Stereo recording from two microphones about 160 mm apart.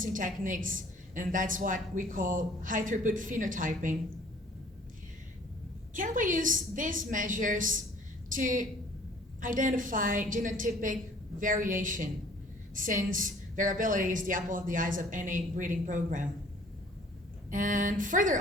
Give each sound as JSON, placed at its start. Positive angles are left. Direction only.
{"t": 0.0, "sound": "a woman's voice", "side_deg": -55}
{"t": 5.9, "sound": "a woman's voice", "side_deg": -55}
{"t": 17.5, "sound": "a woman's voice", "side_deg": -55}